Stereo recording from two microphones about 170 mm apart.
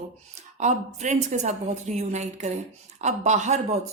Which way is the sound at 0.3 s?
45° right (ahead or behind).